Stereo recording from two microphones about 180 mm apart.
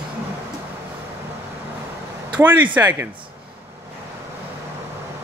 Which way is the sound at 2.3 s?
10° right (ahead or behind).